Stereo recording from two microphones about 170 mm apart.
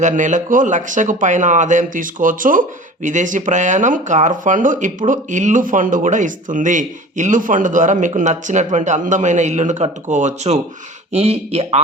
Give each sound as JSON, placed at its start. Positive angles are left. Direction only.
{"t": 0.0, "sound": "speech", "side_deg": -45}